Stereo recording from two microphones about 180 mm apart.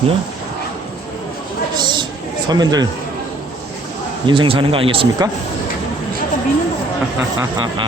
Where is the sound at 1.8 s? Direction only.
25° right (ahead or behind).